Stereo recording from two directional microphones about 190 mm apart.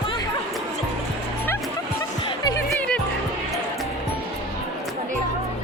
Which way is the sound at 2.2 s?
20° left (ahead or behind).